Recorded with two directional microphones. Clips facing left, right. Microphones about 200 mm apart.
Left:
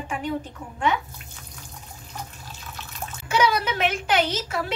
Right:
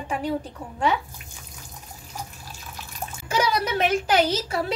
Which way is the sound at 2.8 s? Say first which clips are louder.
Right 1 dB; 10° right (ahead or behind).